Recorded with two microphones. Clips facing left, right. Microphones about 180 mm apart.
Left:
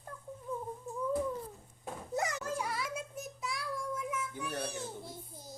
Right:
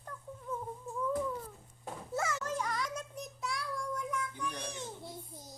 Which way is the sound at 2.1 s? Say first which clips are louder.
Even; 15° left (ahead or behind).